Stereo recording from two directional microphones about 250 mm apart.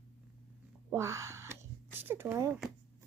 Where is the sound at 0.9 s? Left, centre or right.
Centre.